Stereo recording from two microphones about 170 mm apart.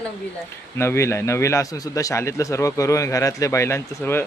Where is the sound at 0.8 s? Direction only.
15° left (ahead or behind).